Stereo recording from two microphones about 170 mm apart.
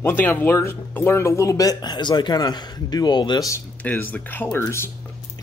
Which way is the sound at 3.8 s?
10° left (ahead or behind).